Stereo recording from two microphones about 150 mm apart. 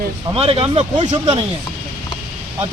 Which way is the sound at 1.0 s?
50° right (ahead or behind).